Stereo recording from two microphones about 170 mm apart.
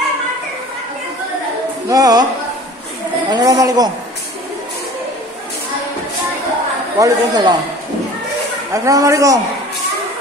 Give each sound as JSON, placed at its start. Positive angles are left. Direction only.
{"t": 1.9, "sound": "a man's voice", "side_deg": -20}
{"t": 3.3, "sound": "a man's voice", "side_deg": -20}
{"t": 7.0, "sound": "a man's voice", "side_deg": -25}
{"t": 8.7, "sound": "a man's voice", "side_deg": -20}